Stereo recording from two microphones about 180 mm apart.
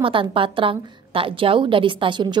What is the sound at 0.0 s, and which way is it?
A woman's voice, 30° right (ahead or behind).